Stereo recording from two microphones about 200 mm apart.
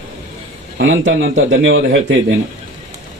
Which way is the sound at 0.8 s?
75° right (ahead or behind).